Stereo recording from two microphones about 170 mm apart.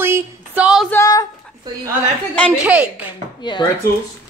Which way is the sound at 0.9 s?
20° left (ahead or behind).